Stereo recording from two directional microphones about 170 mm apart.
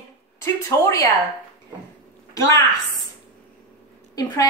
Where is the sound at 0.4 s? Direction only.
20° left (ahead or behind).